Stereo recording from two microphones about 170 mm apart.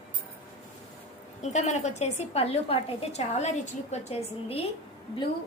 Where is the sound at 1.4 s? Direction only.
45° left (ahead or behind).